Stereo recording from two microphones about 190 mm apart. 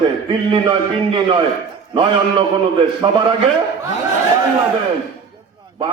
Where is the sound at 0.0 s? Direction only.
25° right (ahead or behind).